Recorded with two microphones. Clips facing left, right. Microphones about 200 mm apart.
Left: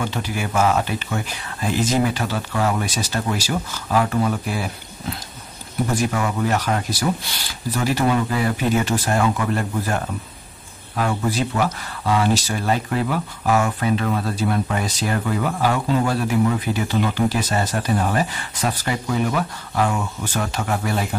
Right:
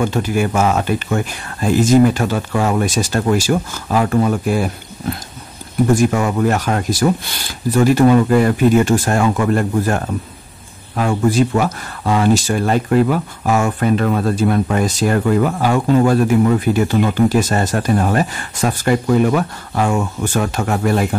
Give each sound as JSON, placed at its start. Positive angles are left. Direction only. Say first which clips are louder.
{"t": 0.0, "sound": "speech", "louder": "right 8 dB", "side_deg": -50}
{"t": 5.9, "sound": "speech", "louder": "right 6 dB", "side_deg": -50}